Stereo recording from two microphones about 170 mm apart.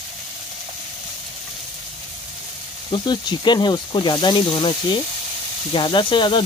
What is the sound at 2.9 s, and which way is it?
Speech, 25° left (ahead or behind).